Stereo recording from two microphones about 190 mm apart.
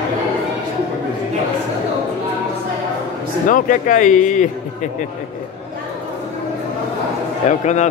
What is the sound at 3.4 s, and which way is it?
Speech, 45° left (ahead or behind).